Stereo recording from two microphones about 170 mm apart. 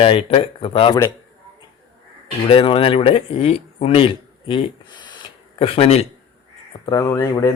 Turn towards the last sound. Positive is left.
turn(degrees=20)  # may be behind; listen again after turning